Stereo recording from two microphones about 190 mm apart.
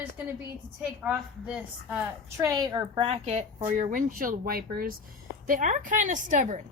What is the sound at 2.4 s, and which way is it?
A woman's voice, 20° right (ahead or behind).